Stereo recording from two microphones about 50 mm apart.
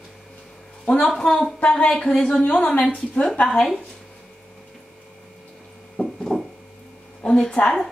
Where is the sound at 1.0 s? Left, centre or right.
Centre.